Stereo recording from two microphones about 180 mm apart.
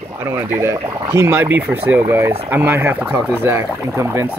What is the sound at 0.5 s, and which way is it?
Speech, 15° right (ahead or behind).